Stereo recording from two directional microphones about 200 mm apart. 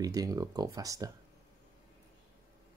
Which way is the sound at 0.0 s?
20° right (ahead or behind).